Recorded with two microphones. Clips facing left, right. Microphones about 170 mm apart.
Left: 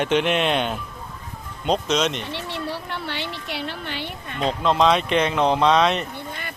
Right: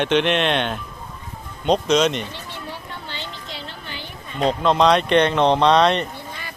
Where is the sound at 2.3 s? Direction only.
70° left (ahead or behind).